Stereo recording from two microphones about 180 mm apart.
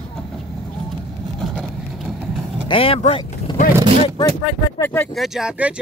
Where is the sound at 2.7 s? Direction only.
30° left (ahead or behind).